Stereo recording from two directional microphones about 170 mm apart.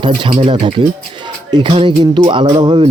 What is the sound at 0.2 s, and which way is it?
Speech, 30° right (ahead or behind).